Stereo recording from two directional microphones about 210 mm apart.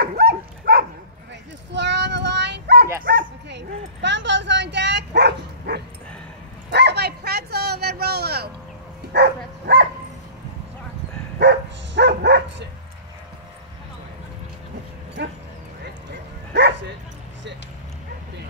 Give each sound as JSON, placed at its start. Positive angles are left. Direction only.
{"t": 0.0, "sound": "dog", "side_deg": -50}
{"t": 1.7, "sound": "child singing", "side_deg": -55}
{"t": 3.0, "sound": "bow-wow", "side_deg": -50}
{"t": 9.1, "sound": "dog", "side_deg": -55}
{"t": 11.3, "sound": "dog", "side_deg": -55}
{"t": 15.8, "sound": "bow-wow", "side_deg": -50}